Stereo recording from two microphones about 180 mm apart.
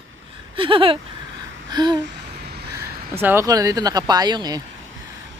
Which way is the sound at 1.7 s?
25° right (ahead or behind).